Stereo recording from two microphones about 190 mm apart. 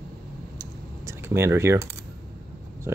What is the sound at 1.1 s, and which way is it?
Speech, 15° right (ahead or behind).